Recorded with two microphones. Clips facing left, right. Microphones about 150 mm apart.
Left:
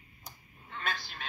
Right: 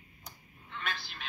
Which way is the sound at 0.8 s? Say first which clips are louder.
Left 2 dB; 45° left (ahead or behind).